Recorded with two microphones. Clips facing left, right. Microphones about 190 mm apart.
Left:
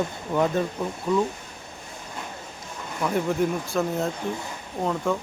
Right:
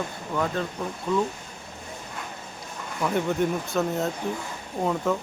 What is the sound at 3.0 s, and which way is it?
Speech, centre (ahead or behind).